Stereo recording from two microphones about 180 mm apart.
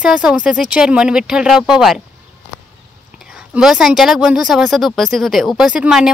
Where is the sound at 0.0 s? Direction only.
5° right (ahead or behind).